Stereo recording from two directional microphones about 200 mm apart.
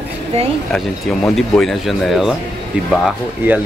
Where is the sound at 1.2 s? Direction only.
Centre (ahead or behind).